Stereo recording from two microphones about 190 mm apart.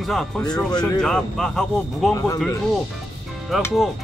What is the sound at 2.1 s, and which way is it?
Speech, 15° left (ahead or behind).